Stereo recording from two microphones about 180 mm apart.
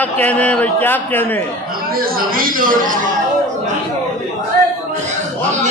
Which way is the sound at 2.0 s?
50° right (ahead or behind).